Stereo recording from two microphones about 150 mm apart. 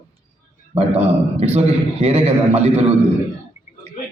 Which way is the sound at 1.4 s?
45° right (ahead or behind).